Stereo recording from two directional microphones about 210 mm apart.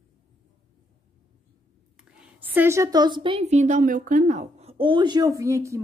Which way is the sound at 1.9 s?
5° right (ahead or behind).